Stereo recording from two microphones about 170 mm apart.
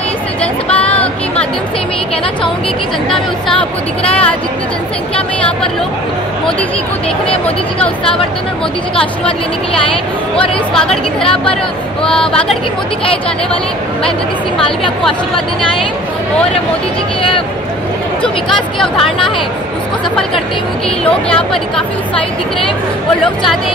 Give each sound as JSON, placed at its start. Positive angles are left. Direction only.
{"t": 0.4, "sound": "a sound", "side_deg": 10}
{"t": 3.1, "sound": "a woman's voice", "side_deg": 0}
{"t": 12.0, "sound": "a woman's voice", "side_deg": 5}
{"t": 13.0, "sound": "speech", "side_deg": 35}
{"t": 21.0, "sound": "a woman's voice", "side_deg": 5}